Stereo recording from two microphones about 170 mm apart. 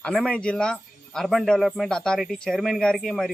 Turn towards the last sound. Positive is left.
turn(degrees=0)  # may be behind; listen again after turning